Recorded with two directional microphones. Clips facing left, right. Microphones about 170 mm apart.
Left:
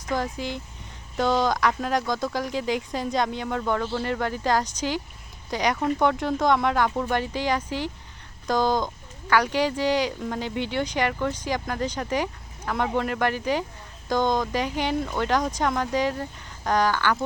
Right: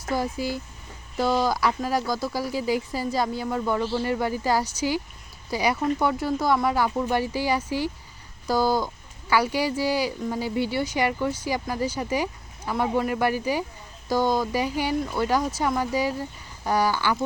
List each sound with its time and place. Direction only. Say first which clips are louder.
0.1 s speech: right 1 dB; 10° right (ahead or behind)